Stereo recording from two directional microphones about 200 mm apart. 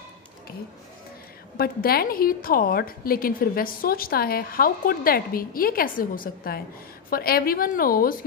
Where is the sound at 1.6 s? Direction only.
50° left (ahead or behind).